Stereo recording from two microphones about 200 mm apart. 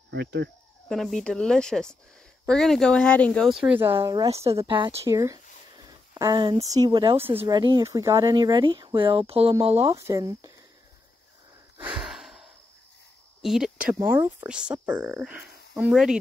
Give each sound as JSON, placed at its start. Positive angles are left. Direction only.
{"t": 0.1, "sound": "speech", "side_deg": -60}
{"t": 0.8, "sound": "speech", "side_deg": 5}
{"t": 3.9, "sound": "speech", "side_deg": -20}
{"t": 9.8, "sound": "speech", "side_deg": -15}
{"t": 11.8, "sound": "a sound", "side_deg": -5}
{"t": 13.4, "sound": "speech", "side_deg": 0}